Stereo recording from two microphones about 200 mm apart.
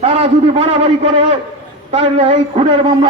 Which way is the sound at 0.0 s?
30° right (ahead or behind).